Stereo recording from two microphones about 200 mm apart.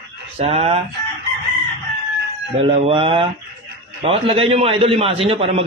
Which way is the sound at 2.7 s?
30° right (ahead or behind).